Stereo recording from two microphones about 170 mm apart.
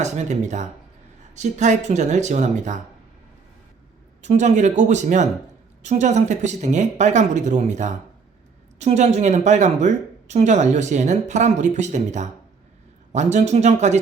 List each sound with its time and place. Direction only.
0.0 s speech: 45° right (ahead or behind)
4.2 s speech: 45° right (ahead or behind)